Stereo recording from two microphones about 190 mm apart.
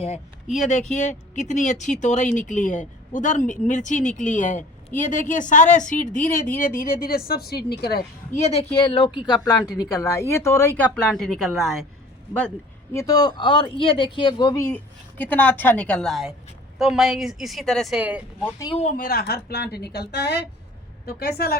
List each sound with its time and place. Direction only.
0.0 s a woman's voice: 35° left (ahead or behind); by 8.0 s 55° left (ahead or behind)
8.3 s a woman's voice: 35° left (ahead or behind); by 11.7 s centre (ahead or behind)
12.9 s a woman's voice: 15° left (ahead or behind); by 18.5 s 5° right (ahead or behind)
18.8 s a woman's voice: 45° left (ahead or behind)